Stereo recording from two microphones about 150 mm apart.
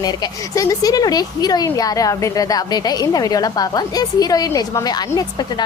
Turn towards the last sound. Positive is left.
turn(degrees=25)  # may be behind; listen again after turning